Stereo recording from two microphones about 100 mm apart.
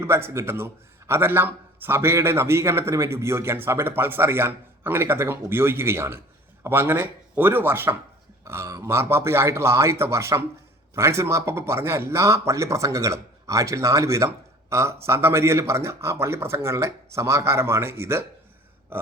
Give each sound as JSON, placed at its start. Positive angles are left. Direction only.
{"t": 0.0, "sound": "speech", "side_deg": -25}